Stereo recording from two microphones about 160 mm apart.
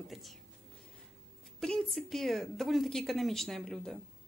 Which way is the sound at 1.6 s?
5° left (ahead or behind).